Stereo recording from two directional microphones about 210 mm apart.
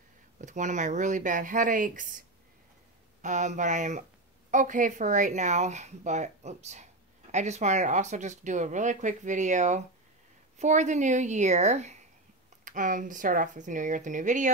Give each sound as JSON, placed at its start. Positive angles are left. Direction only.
{"t": 0.4, "sound": "speech", "side_deg": -35}